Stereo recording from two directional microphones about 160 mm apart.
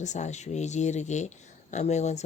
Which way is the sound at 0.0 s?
45° left (ahead or behind).